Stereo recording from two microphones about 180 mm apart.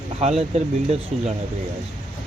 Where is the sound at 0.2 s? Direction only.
35° right (ahead or behind).